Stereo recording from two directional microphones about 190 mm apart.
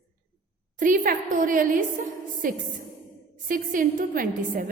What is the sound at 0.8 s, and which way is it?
A woman's voice, 45° right (ahead or behind).